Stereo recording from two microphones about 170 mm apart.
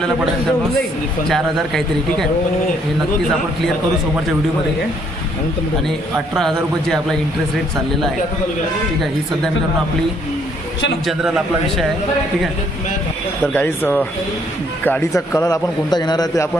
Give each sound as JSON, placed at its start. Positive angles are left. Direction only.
{"t": 1.3, "sound": "a man's voice", "side_deg": 0}
{"t": 5.9, "sound": "a man's voice", "side_deg": 0}
{"t": 11.1, "sound": "a man's voice", "side_deg": 0}
{"t": 13.5, "sound": "a man's voice", "side_deg": 10}